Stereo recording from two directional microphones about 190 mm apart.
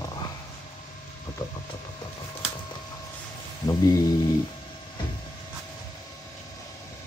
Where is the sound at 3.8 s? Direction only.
20° left (ahead or behind).